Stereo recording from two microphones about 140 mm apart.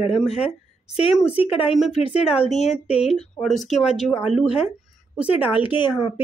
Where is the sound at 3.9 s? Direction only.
5° right (ahead or behind).